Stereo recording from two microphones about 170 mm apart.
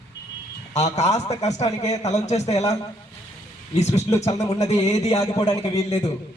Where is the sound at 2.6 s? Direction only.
20° left (ahead or behind).